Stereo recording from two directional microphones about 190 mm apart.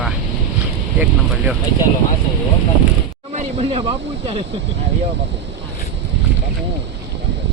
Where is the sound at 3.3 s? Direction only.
35° right (ahead or behind).